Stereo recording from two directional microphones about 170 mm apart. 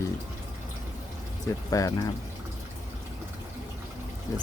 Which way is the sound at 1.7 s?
20° left (ahead or behind).